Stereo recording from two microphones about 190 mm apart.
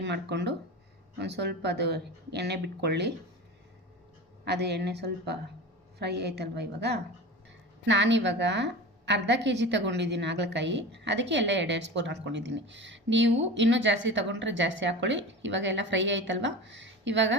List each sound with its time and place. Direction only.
0.0 s speech: 65° right (ahead or behind)
4.4 s a woman's voice: 60° right (ahead or behind)